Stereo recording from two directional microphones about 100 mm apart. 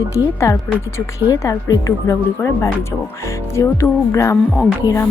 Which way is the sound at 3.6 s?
30° left (ahead or behind).